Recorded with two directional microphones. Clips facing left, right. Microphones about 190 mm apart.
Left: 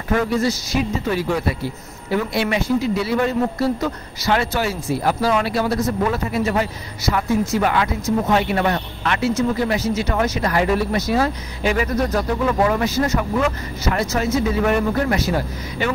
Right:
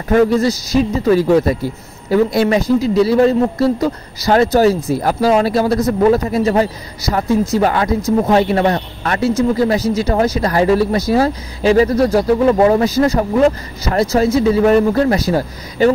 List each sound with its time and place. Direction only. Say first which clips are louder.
0.1 s speech: right 7 dB; 40° right (ahead or behind)